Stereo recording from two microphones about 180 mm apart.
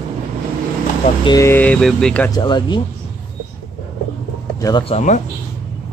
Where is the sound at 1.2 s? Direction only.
20° left (ahead or behind).